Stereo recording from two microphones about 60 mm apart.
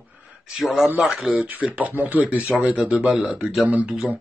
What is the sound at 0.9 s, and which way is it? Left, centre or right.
Speech, centre.